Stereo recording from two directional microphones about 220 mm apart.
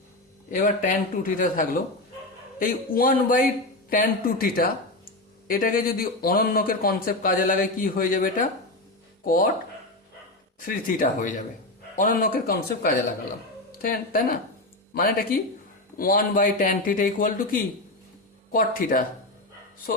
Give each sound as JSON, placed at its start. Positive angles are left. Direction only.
{"t": 0.5, "sound": "speech", "side_deg": 35}
{"t": 10.7, "sound": "speech", "side_deg": 40}